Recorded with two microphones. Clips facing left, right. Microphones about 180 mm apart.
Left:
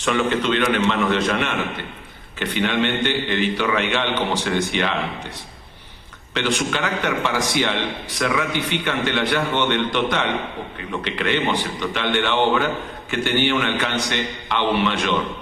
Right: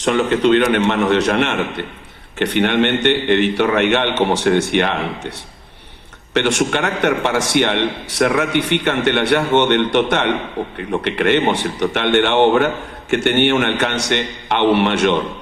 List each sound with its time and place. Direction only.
0.4 s a man's voice: 60° right (ahead or behind)
6.3 s a man's voice: 70° right (ahead or behind)